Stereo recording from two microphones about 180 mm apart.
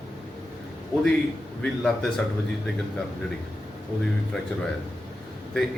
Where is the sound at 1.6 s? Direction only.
5° left (ahead or behind).